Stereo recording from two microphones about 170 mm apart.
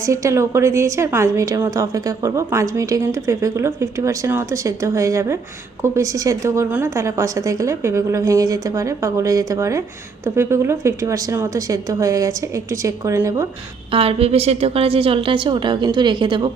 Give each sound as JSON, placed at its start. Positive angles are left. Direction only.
{"t": 0.0, "sound": "a woman's voice", "side_deg": -20}
{"t": 13.9, "sound": "a woman's voice", "side_deg": -35}